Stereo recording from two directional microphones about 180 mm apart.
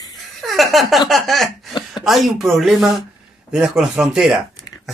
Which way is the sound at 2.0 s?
Centre (ahead or behind).